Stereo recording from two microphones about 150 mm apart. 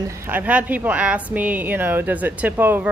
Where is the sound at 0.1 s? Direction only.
15° right (ahead or behind).